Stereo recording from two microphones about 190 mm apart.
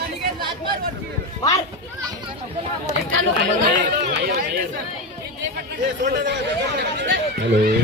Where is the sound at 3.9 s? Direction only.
55° right (ahead or behind).